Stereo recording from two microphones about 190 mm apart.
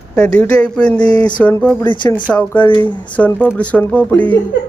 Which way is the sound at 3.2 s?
10° left (ahead or behind).